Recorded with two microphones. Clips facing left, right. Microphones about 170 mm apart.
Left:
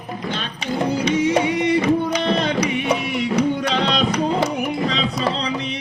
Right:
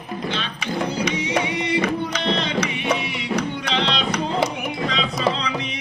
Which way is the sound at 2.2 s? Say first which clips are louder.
Left 3 dB; 50° left (ahead or behind).